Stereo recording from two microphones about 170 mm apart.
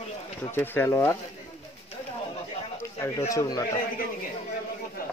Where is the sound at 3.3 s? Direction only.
20° left (ahead or behind).